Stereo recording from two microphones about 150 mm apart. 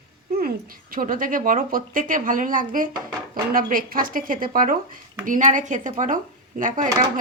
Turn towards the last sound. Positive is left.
turn(degrees=-60)  # may be behind; listen again after turning